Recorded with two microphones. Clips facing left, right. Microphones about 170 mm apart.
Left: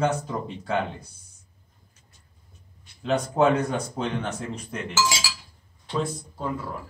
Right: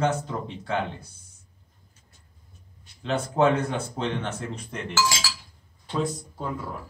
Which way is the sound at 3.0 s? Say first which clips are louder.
Left 1 dB; 5° left (ahead or behind).